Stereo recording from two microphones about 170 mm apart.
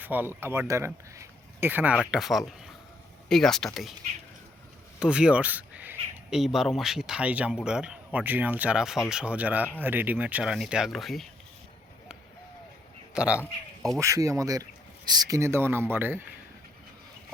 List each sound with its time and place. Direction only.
0.0 s speech: 10° right (ahead or behind)
4.9 s speech: 5° right (ahead or behind)
13.1 s speech: 5° right (ahead or behind)
14.0 s speech: 20° right (ahead or behind)